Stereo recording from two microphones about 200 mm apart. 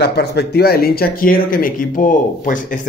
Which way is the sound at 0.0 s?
55° left (ahead or behind).